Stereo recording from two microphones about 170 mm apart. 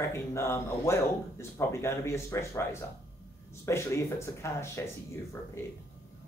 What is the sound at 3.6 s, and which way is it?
Speech, 15° left (ahead or behind).